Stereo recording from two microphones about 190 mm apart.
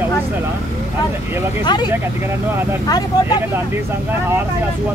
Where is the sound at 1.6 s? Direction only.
20° left (ahead or behind).